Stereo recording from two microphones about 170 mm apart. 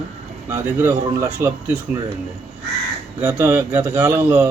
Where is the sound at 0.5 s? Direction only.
15° right (ahead or behind).